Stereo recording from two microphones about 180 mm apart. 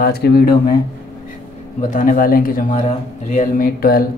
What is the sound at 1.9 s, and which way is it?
Speech, 45° left (ahead or behind).